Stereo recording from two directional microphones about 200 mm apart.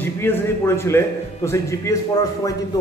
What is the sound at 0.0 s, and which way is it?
A man's voice, 10° left (ahead or behind).